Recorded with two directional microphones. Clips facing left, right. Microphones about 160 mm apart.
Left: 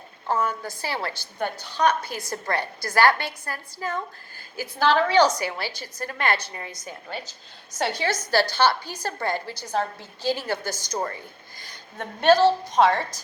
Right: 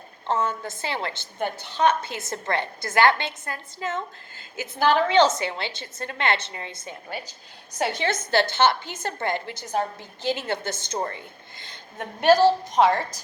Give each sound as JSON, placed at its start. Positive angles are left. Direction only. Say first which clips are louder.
{"t": 0.3, "sound": "a woman's voice", "louder": "even", "side_deg": -25}
{"t": 7.9, "sound": "a woman's voice", "louder": "even", "side_deg": -25}
{"t": 11.9, "sound": "a woman's voice", "louder": "even", "side_deg": -10}